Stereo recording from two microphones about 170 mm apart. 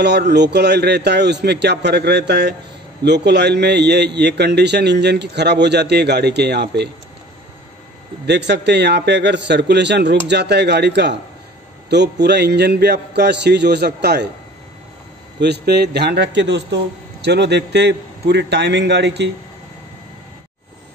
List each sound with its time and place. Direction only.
0.3 s a man's voice: 80° right
8.3 s a man's voice: 90° right; by 14.3 s 75° right (ahead or behind)
15.4 s a man's voice: 75° right (ahead or behind)